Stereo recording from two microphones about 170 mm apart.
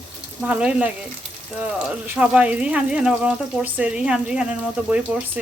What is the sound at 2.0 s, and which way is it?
Speech, 5° right (ahead or behind).